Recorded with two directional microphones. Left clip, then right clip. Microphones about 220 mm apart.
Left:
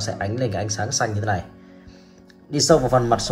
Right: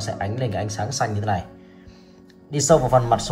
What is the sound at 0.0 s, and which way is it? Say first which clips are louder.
Speech: left 2 dB; 15° left (ahead or behind).